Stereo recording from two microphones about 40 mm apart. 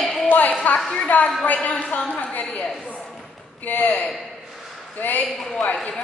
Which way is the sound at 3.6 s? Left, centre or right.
Left.